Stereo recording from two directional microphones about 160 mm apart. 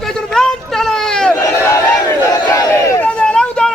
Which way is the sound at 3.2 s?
5° left (ahead or behind).